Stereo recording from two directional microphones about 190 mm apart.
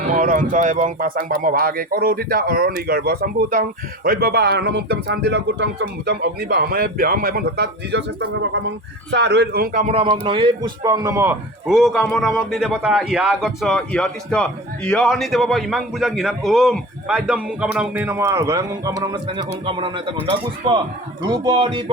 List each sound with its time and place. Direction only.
0.1 s speech: 45° right (ahead or behind)
9.8 s a man's voice: 30° right (ahead or behind); by 11.3 s 15° right (ahead or behind)
11.6 s a man's voice: centre (ahead or behind); by 21.8 s 25° right (ahead or behind)